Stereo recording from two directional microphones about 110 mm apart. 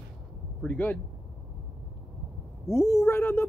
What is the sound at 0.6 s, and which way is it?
Speech, 15° left (ahead or behind).